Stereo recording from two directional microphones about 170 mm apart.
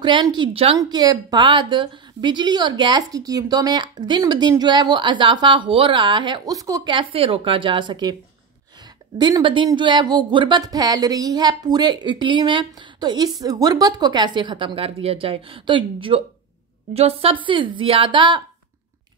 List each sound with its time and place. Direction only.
0.0 s a woman's voice: 25° right (ahead or behind)
0.7 s a woman's voice: 25° right (ahead or behind)
9.2 s a woman's voice: 25° right (ahead or behind)